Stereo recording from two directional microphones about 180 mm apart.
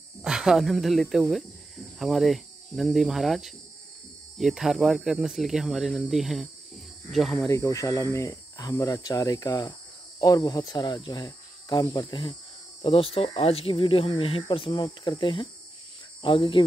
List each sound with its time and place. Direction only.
0.2 s speech: 5° right (ahead or behind)
7.4 s speech: 15° left (ahead or behind)